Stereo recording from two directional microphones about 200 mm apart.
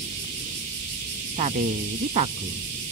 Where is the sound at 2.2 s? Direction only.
40° right (ahead or behind).